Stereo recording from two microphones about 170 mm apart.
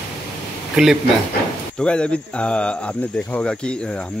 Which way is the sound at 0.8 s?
Centre (ahead or behind).